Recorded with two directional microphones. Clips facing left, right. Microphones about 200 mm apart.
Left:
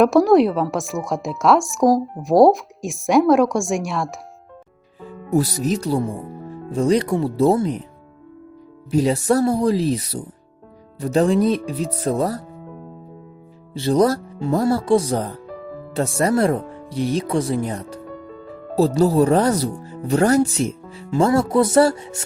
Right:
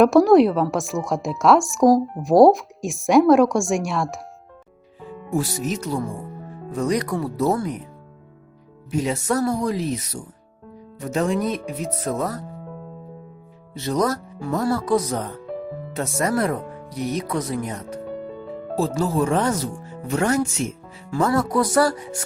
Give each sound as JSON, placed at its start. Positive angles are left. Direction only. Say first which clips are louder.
{"t": 0.0, "sound": "a woman's voice", "louder": "even", "side_deg": 0}
{"t": 5.3, "sound": "speech", "louder": "left 5 dB", "side_deg": 40}
{"t": 8.9, "sound": "speech", "louder": "left 5 dB", "side_deg": 35}
{"t": 13.7, "sound": "speech", "louder": "left 5 dB", "side_deg": 30}